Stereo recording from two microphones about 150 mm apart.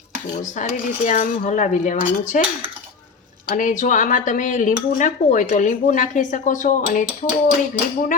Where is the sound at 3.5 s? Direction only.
55° left (ahead or behind).